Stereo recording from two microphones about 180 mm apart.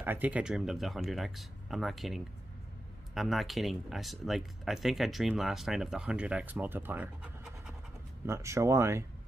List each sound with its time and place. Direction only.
0.0 s speech: 10° right (ahead or behind)